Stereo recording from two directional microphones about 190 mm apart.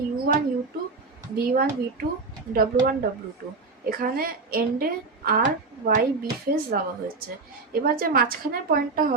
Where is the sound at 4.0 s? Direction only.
50° right (ahead or behind).